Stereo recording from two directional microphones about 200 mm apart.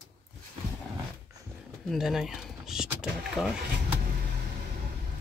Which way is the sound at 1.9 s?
Centre (ahead or behind).